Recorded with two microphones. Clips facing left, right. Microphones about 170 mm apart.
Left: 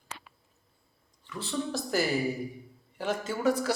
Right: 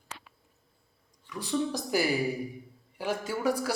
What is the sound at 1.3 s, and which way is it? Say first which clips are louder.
A woman's voice: right 3 dB; 15° right (ahead or behind).